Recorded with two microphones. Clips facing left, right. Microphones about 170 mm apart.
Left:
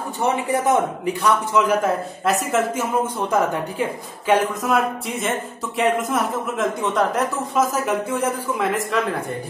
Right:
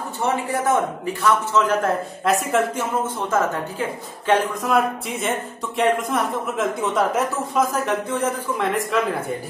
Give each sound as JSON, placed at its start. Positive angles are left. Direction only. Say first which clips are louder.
{"t": 0.2, "sound": "a man's voice", "louder": "left 2 dB", "side_deg": 20}
{"t": 4.3, "sound": "speech", "louder": "left 1 dB", "side_deg": 0}